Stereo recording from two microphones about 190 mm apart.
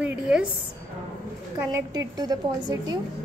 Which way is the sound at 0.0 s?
5° right (ahead or behind).